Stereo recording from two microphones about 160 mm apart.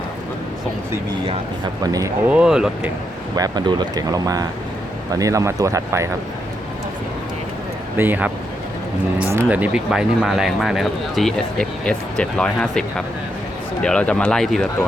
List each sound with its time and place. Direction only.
1.8 s speech: 20° right (ahead or behind)
2.3 s speech: 5° right (ahead or behind)
3.3 s speech: 25° right (ahead or behind)
7.9 s speech: 10° right (ahead or behind); by 12.8 s 5° left (ahead or behind)
13.8 s speech: 5° left (ahead or behind)